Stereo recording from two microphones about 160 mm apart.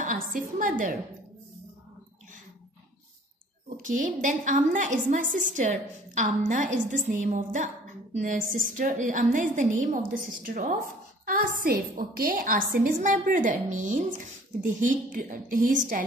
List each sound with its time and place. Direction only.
0.0 s a woman's voice: 60° right (ahead or behind)
3.8 s a woman's voice: 55° right (ahead or behind)